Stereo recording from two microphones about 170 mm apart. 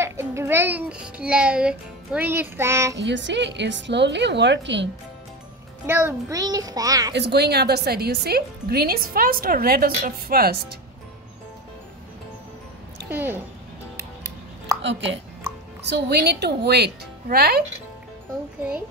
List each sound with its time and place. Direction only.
0.0 s a child's voice: 15° right (ahead or behind)
3.0 s a woman's voice: 90° right
5.9 s a child's voice: 10° right (ahead or behind)
7.2 s speech: 75° right (ahead or behind)
13.1 s a child's voice: 10° right (ahead or behind)
13.9 s music: 15° right (ahead or behind)
14.8 s speech: 90° right
15.9 s speech: 75° right (ahead or behind)